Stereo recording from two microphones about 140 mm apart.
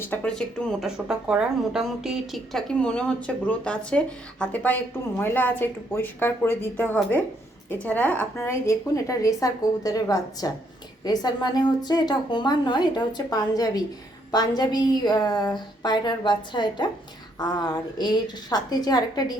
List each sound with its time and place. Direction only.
0.0 s a woman's voice: 10° left (ahead or behind); by 19.4 s 30° left (ahead or behind)